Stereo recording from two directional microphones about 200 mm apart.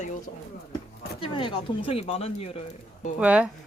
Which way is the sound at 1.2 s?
25° left (ahead or behind).